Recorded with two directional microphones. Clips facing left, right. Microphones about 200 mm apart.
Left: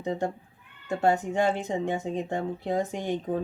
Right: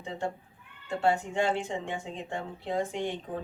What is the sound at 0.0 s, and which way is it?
Speech, 40° left (ahead or behind).